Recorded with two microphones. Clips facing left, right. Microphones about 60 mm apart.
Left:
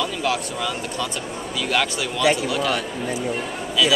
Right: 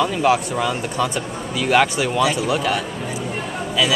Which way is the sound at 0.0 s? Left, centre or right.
Right.